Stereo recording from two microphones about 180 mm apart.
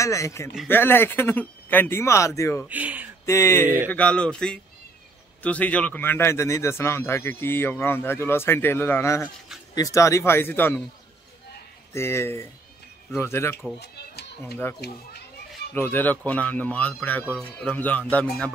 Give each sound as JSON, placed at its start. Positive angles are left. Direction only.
{"t": 0.0, "sound": "a man's voice", "side_deg": 15}
{"t": 2.7, "sound": "a sound", "side_deg": -10}
{"t": 3.3, "sound": "a man's voice", "side_deg": 15}
{"t": 3.6, "sound": "speech", "side_deg": -10}
{"t": 3.9, "sound": "a man's voice", "side_deg": 5}
{"t": 11.9, "sound": "a man's voice", "side_deg": 15}
{"t": 13.7, "sound": "a sound", "side_deg": 65}
{"t": 14.8, "sound": "a child's voice", "side_deg": 65}
{"t": 15.7, "sound": "a man's voice", "side_deg": 10}